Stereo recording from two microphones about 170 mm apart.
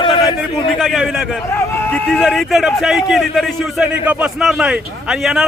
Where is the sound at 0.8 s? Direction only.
Centre (ahead or behind).